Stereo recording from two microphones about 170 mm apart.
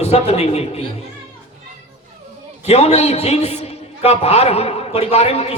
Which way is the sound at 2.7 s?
40° left (ahead or behind).